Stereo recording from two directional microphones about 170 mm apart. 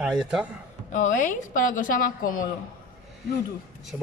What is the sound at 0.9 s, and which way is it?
Speech, 50° left (ahead or behind).